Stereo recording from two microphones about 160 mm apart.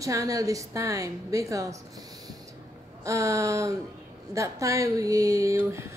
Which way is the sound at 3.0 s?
20° right (ahead or behind).